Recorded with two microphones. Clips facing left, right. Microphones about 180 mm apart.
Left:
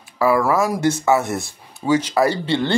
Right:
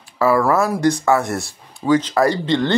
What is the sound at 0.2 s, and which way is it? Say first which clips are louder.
Speech: right 1 dB; 15° left (ahead or behind).